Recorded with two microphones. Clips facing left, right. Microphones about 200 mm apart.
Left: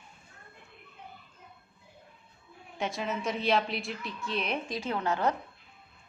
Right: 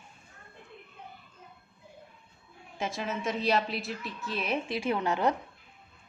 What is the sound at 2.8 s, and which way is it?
A woman's voice, centre (ahead or behind).